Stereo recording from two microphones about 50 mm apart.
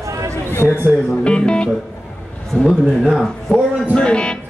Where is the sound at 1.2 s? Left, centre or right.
Left.